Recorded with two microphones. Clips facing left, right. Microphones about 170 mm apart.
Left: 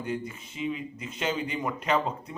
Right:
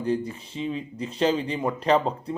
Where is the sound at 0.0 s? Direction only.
35° right (ahead or behind).